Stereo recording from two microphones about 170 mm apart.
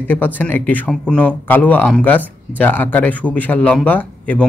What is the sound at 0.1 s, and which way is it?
Speech, 10° left (ahead or behind).